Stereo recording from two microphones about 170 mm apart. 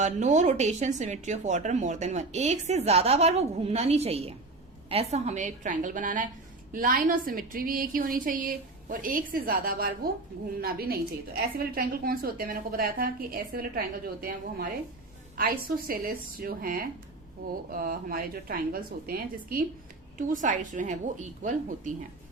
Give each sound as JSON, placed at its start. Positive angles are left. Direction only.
{"t": 0.0, "sound": "a woman's voice", "side_deg": -45}